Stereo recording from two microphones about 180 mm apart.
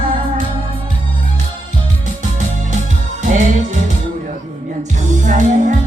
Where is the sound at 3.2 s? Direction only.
45° right (ahead or behind).